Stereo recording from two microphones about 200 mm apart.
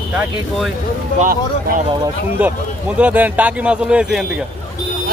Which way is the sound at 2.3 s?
5° right (ahead or behind).